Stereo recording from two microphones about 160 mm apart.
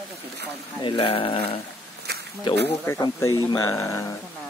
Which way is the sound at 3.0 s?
20° left (ahead or behind).